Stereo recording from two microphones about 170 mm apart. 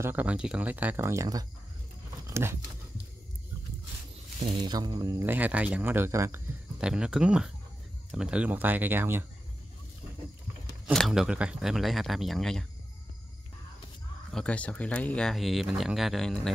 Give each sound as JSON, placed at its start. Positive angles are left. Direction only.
{"t": 0.0, "sound": "speech", "side_deg": -10}
{"t": 2.2, "sound": "a sound", "side_deg": -15}
{"t": 4.4, "sound": "speech", "side_deg": -30}
{"t": 6.8, "sound": "speech", "side_deg": -5}
{"t": 10.9, "sound": "speech", "side_deg": 0}
{"t": 14.3, "sound": "speech", "side_deg": 5}